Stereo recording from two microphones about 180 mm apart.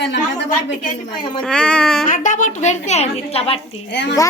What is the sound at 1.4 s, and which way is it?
Speech, 5° left (ahead or behind).